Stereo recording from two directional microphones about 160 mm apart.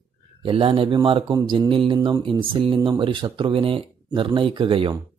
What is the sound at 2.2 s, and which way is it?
Speech, 35° right (ahead or behind).